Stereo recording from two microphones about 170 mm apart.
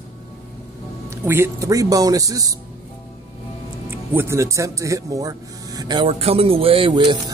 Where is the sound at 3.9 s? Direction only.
15° right (ahead or behind).